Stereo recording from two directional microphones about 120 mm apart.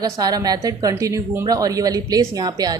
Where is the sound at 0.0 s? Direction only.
35° right (ahead or behind).